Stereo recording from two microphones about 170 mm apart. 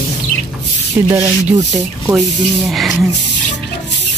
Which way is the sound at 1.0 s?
15° right (ahead or behind).